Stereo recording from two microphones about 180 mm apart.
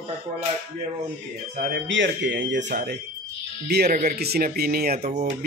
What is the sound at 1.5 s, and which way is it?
Speech, 75° right (ahead or behind).